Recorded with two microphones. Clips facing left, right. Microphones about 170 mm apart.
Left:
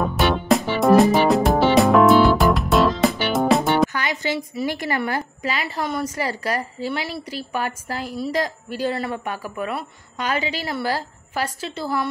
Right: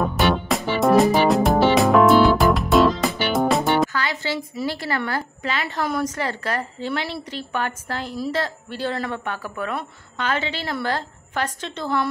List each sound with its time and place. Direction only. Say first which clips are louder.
0.0 s music: even; centre (ahead or behind)
3.9 s a woman's voice: left 1 dB; 20° left (ahead or behind)